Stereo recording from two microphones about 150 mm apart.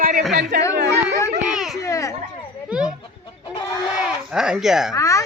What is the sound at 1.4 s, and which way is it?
Speech, 5° right (ahead or behind).